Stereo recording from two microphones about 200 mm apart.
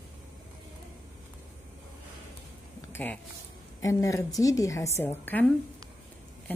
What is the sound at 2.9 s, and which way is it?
A woman's voice, 10° left (ahead or behind).